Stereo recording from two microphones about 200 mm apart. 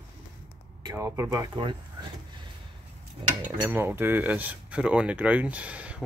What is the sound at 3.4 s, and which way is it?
Speech, 10° right (ahead or behind).